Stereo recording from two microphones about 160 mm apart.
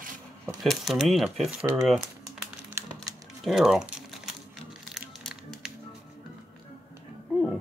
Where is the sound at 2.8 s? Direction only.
15° right (ahead or behind).